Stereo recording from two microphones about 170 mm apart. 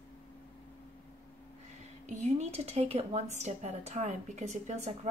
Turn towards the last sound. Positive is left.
turn(degrees=-45)  # may be behind; listen again after turning